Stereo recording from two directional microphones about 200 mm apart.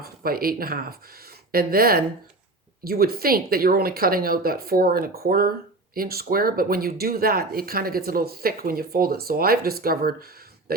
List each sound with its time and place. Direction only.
0.0 s speech: 50° right (ahead or behind)